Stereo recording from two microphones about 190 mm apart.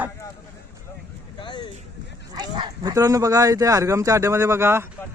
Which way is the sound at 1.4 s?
25° left (ahead or behind).